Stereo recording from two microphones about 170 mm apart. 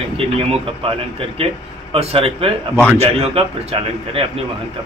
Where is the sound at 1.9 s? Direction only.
35° right (ahead or behind).